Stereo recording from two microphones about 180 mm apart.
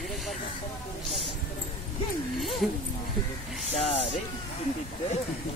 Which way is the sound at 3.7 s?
35° left (ahead or behind).